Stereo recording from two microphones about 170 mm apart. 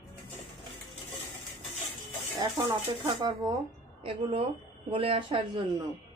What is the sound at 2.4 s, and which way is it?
Speech, 25° right (ahead or behind).